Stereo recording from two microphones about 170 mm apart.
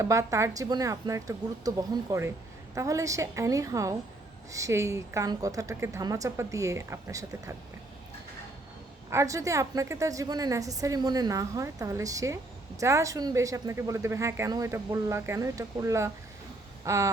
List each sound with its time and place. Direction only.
0.0 s a woman's voice: 20° right (ahead or behind)
9.0 s a woman's voice: 15° right (ahead or behind)
16.8 s a sound: 15° right (ahead or behind)